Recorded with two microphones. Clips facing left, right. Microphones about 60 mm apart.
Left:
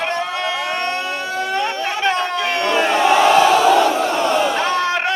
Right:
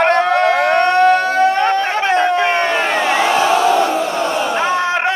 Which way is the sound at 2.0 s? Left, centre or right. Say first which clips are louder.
Right 3 dB; right.